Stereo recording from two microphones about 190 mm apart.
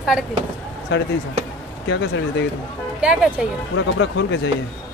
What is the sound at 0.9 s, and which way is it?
Speech, 65° left (ahead or behind).